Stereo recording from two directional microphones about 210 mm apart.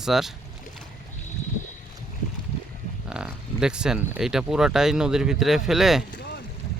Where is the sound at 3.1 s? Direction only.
5° right (ahead or behind).